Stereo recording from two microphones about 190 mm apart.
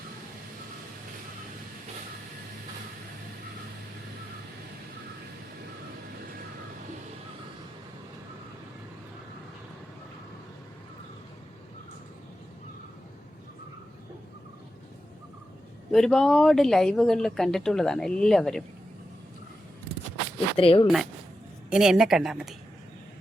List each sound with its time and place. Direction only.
15.9 s speech: centre (ahead or behind)
20.6 s speech: 30° left (ahead or behind)
20.8 s speech: centre (ahead or behind)